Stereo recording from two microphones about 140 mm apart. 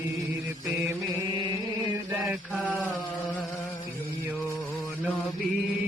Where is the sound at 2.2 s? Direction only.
10° right (ahead or behind).